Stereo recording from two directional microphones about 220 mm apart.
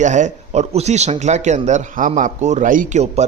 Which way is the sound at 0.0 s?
35° right (ahead or behind).